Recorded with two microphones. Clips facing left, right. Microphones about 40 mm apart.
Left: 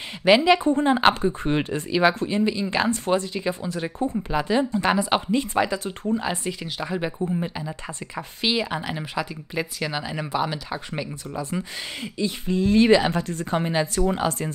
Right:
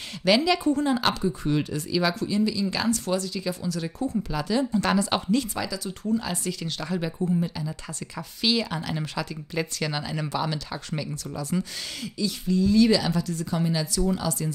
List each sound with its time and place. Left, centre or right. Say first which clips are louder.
0.2 s speech: left 4 dB; left
5.5 s speech: left 7 dB; left